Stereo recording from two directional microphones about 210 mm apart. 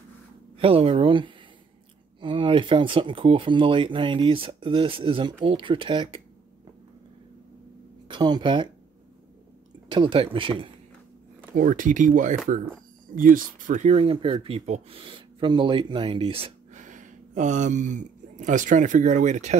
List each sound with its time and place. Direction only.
0.6 s speech: 25° right (ahead or behind)
8.1 s speech: 20° right (ahead or behind)
9.8 s speech: 25° right (ahead or behind)
11.5 s speech: 40° right (ahead or behind)